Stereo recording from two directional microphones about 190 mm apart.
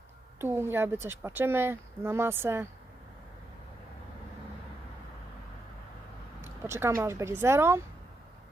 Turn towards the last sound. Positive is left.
turn(degrees=-15)  # may be behind; listen again after turning